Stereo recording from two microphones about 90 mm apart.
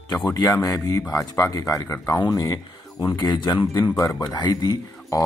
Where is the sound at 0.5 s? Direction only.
40° left (ahead or behind).